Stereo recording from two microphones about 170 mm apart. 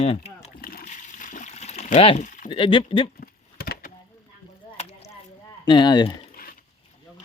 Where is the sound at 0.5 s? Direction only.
60° left (ahead or behind); by 2.2 s 40° left (ahead or behind).